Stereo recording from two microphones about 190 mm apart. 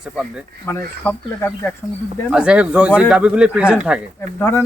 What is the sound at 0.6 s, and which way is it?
Speech, 10° left (ahead or behind).